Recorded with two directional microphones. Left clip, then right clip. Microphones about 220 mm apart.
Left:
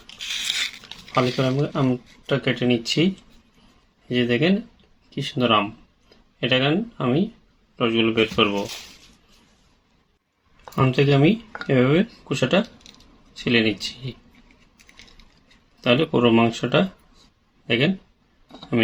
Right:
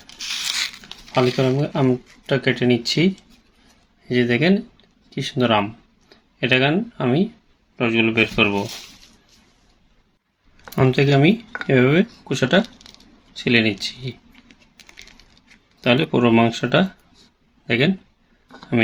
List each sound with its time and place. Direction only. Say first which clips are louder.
0.4 s a sound: right 1 dB; 15° right (ahead or behind)
1.1 s speech: right 3 dB; 30° right (ahead or behind)
4.1 s speech: right 3 dB; 25° right (ahead or behind)
10.7 s speech: right 2 dB; 25° right (ahead or behind)
15.8 s speech: right 1 dB; 25° right (ahead or behind)